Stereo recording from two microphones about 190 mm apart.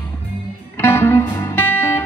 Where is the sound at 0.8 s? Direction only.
10° left (ahead or behind).